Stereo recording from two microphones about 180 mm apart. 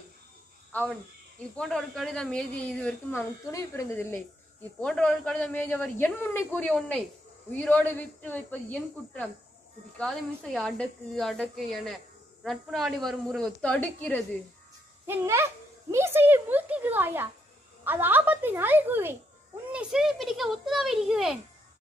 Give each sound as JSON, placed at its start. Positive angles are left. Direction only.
{"t": 0.7, "sound": "a sound", "side_deg": 10}
{"t": 1.6, "sound": "a man's voice", "side_deg": 5}
{"t": 15.0, "sound": "a woman's voice", "side_deg": -15}